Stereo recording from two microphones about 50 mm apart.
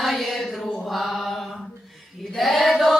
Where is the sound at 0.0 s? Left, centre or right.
Centre.